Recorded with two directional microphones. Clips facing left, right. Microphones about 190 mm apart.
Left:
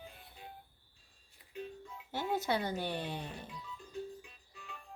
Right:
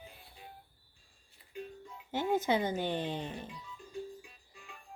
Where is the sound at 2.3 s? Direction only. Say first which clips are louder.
Right 4 dB; 20° right (ahead or behind).